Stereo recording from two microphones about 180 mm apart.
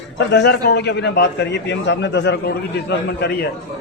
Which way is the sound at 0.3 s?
70° left (ahead or behind).